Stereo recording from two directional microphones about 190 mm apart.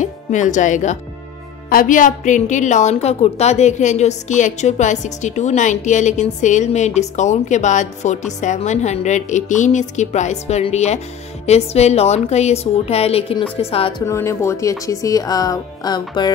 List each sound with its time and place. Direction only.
0.0 s a woman's voice: 40° left (ahead or behind)
14.0 s speech: 15° left (ahead or behind)